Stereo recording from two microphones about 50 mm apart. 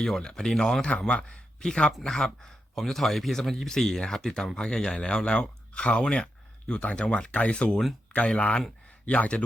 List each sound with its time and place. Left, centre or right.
0.0 s a man's voice: centre